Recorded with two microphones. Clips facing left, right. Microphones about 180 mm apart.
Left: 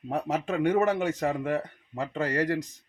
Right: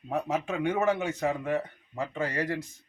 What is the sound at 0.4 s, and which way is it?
Speech, 45° left (ahead or behind).